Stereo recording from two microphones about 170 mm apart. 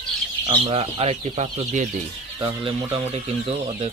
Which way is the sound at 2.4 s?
30° right (ahead or behind).